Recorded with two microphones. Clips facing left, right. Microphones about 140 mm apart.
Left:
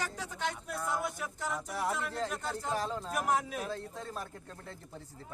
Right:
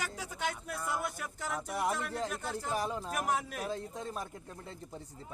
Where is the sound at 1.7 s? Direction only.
15° right (ahead or behind).